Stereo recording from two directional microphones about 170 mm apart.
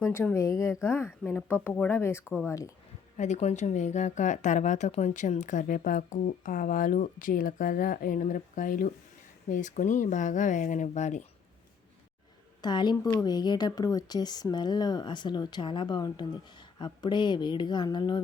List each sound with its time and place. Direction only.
0.0 s speech: 15° left (ahead or behind)
3.2 s speech: 40° left (ahead or behind)
12.6 s speech: 25° left (ahead or behind)